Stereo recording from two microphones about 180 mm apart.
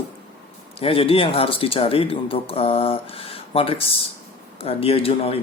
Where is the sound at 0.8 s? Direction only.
30° left (ahead or behind).